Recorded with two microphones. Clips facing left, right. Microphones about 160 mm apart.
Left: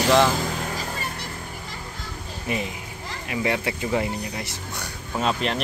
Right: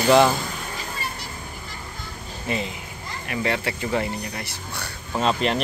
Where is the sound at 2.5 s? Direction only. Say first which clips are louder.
Right 1 dB; 15° left (ahead or behind).